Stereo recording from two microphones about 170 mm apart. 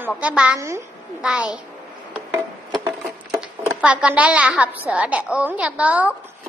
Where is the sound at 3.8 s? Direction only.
5° right (ahead or behind).